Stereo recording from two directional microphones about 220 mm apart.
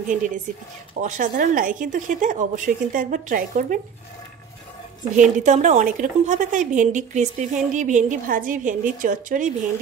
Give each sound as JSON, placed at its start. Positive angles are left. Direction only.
{"t": 0.0, "sound": "a woman's voice", "side_deg": -35}
{"t": 5.1, "sound": "a woman's voice", "side_deg": -35}